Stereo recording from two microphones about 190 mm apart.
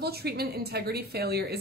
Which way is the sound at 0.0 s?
55° right (ahead or behind).